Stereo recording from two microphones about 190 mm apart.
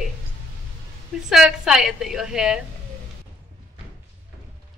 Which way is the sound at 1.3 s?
Centre (ahead or behind).